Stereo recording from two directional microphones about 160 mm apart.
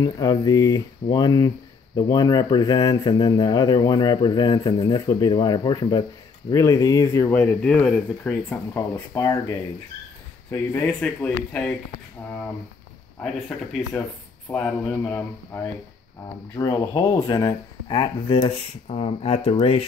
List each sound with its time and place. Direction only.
0.0 s speech: 25° left (ahead or behind); by 11.7 s 5° left (ahead or behind)
13.2 s speech: centre (ahead or behind)
14.5 s speech: 10° left (ahead or behind); by 18.5 s 25° left (ahead or behind)
18.9 s speech: 40° left (ahead or behind)